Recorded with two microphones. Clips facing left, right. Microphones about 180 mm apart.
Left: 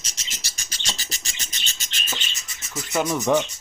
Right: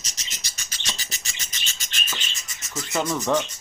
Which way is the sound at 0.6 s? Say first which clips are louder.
Left 2 dB; 35° left (ahead or behind).